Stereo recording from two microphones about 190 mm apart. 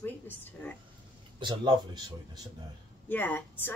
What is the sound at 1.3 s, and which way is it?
Speech, 25° right (ahead or behind).